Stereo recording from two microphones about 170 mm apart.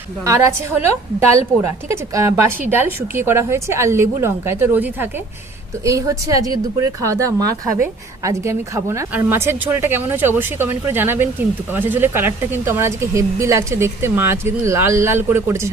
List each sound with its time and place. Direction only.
0.3 s speech: 15° right (ahead or behind)